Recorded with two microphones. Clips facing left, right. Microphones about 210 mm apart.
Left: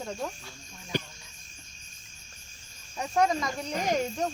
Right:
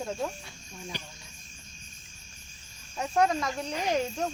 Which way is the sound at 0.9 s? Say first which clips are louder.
Left 13 dB; 50° left (ahead or behind).